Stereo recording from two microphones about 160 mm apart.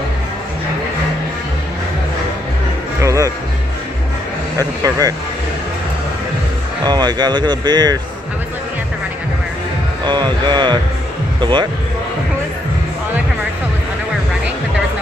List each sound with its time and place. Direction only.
3.0 s music: 20° right (ahead or behind)
4.8 s speech: 20° right (ahead or behind)
6.8 s speech: 25° right (ahead or behind)
10.0 s speech: 30° right (ahead or behind)